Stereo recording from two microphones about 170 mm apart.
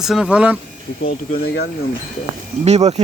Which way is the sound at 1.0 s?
65° left (ahead or behind).